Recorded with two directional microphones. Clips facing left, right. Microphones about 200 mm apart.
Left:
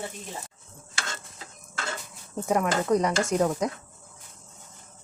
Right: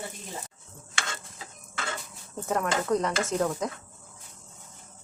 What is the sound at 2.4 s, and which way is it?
Speech, 15° left (ahead or behind).